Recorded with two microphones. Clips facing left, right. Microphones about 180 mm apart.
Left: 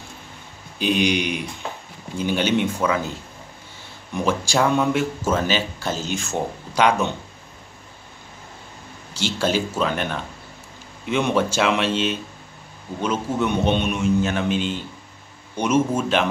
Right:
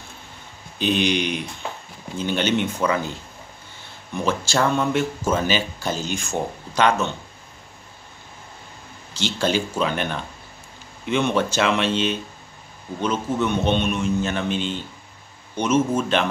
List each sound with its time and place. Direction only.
0.7 s a man's voice: 10° left (ahead or behind)
4.2 s speech: 10° left (ahead or behind)
9.1 s a man's voice: 5° left (ahead or behind)